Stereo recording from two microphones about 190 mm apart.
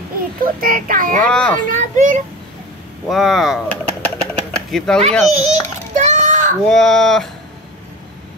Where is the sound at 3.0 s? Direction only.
Centre (ahead or behind).